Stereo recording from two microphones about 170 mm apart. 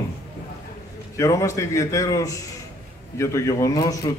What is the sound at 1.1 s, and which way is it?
A man's voice, 20° left (ahead or behind).